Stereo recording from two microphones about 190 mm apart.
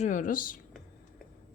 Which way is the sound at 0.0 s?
45° left (ahead or behind).